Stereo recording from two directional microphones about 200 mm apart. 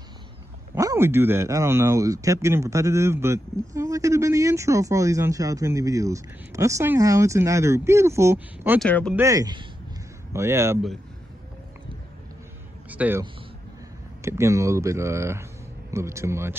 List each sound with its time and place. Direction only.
0.7 s speech: 15° right (ahead or behind)
8.7 s speech: 5° left (ahead or behind)
9.1 s speech: 15° right (ahead or behind)
12.9 s a man's voice: 10° right (ahead or behind)
14.2 s speech: 15° right (ahead or behind)